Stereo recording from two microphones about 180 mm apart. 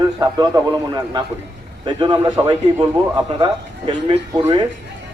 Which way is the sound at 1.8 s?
25° right (ahead or behind).